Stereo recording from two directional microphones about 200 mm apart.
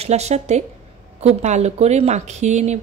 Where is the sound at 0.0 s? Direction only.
35° right (ahead or behind).